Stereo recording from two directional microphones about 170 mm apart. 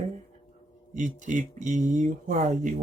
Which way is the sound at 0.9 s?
45° right (ahead or behind).